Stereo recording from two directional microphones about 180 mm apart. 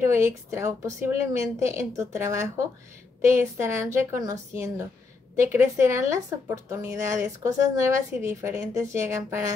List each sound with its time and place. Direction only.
0.0 s speech: 15° right (ahead or behind)